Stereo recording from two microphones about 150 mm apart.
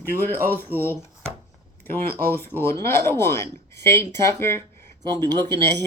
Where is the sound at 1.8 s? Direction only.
15° left (ahead or behind).